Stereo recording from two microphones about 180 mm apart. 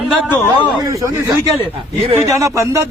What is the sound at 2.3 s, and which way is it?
Speech, 15° right (ahead or behind).